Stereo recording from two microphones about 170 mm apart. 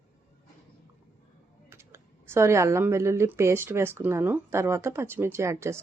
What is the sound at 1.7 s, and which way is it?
Speech, 15° right (ahead or behind).